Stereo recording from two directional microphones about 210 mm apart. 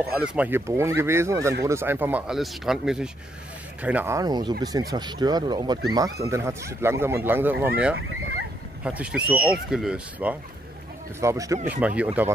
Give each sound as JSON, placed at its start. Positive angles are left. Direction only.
{"t": 0.1, "sound": "speech", "side_deg": -5}